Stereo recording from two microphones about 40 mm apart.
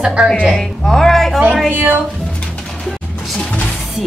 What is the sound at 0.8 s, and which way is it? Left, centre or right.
Speech, centre.